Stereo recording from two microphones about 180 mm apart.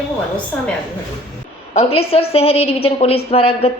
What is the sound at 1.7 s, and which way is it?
A woman's voice, 35° left (ahead or behind).